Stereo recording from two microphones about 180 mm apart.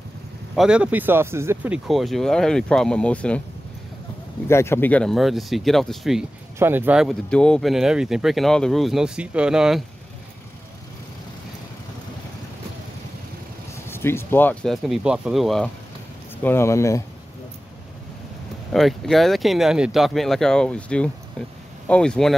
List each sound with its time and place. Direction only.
0.6 s speech: 5° right (ahead or behind)
4.5 s speech: 15° left (ahead or behind)
6.6 s speech: 10° right (ahead or behind)
13.8 s speech: 15° left (ahead or behind)
16.4 s speech: 15° left (ahead or behind)
18.7 s speech: centre (ahead or behind)